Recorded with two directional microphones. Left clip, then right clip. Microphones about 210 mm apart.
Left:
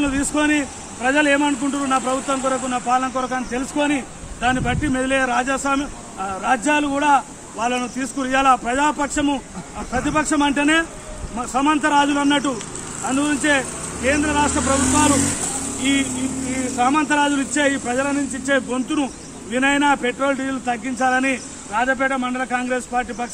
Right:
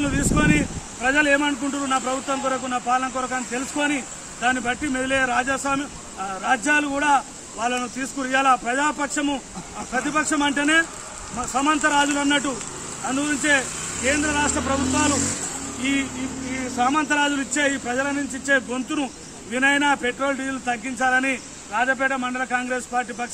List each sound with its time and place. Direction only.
0.0 s speech: 5° right (ahead or behind)
15.1 s speech: 40° left (ahead or behind)
16.7 s speech: 10° right (ahead or behind)